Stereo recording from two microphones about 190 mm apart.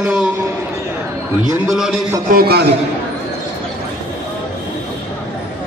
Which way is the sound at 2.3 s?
55° right (ahead or behind).